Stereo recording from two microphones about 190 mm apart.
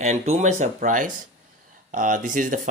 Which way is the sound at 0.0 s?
35° right (ahead or behind).